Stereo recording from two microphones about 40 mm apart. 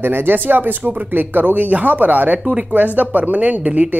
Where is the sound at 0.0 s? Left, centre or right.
Right.